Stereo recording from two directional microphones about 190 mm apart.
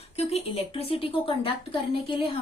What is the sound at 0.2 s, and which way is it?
Speech, 30° left (ahead or behind).